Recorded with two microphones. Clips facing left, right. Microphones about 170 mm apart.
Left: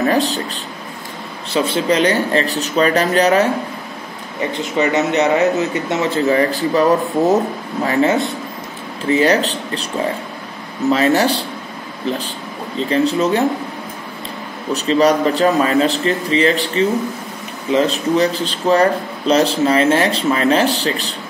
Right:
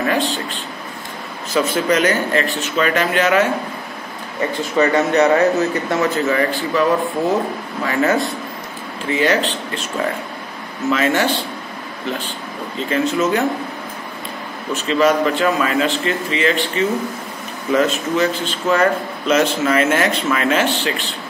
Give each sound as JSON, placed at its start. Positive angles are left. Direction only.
{"t": 0.0, "sound": "a sound", "side_deg": 40}
{"t": 1.5, "sound": "a man's voice", "side_deg": 30}
{"t": 4.4, "sound": "a man's voice", "side_deg": 20}
{"t": 9.1, "sound": "a man's voice", "side_deg": 40}
{"t": 10.9, "sound": "a man's voice", "side_deg": 35}
{"t": 12.9, "sound": "a man's voice", "side_deg": 30}
{"t": 14.7, "sound": "a man's voice", "side_deg": 40}